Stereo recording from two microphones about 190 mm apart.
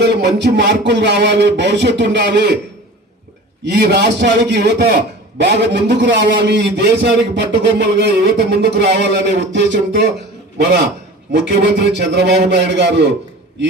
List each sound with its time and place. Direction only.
0.0 s a man's voice: 65° right (ahead or behind)
3.7 s a man's voice: 60° right (ahead or behind)
11.3 s a man's voice: 65° right (ahead or behind)